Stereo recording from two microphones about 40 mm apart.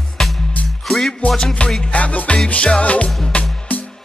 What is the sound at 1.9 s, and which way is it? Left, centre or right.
Music, left.